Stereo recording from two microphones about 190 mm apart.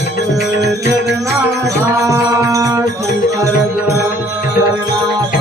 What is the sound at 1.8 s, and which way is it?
Music, 15° right (ahead or behind).